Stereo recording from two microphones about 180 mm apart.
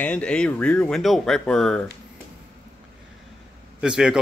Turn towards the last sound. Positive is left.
turn(degrees=-5)  # may be behind; listen again after turning